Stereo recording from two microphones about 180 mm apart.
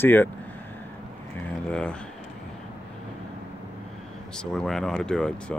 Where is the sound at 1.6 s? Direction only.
5° left (ahead or behind).